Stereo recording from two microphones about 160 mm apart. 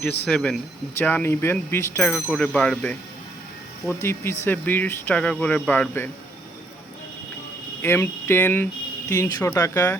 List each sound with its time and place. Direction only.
0.3 s speech: 5° left (ahead or behind)
4.0 s speech: 15° left (ahead or behind)
7.8 s speech: 15° left (ahead or behind)